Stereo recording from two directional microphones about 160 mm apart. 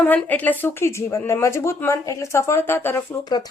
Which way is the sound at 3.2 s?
25° left (ahead or behind).